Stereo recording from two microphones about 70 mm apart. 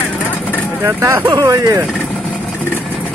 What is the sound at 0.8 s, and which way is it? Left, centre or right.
Speech, right.